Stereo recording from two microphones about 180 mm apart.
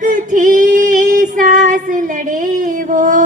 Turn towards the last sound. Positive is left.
turn(degrees=-45)  # may be behind; listen again after turning